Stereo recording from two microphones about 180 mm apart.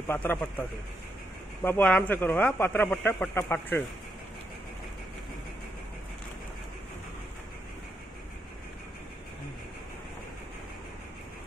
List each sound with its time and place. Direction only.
0.1 s a man's voice: 10° left (ahead or behind)